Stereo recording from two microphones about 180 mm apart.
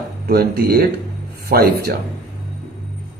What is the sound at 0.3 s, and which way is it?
Speech, 65° right (ahead or behind).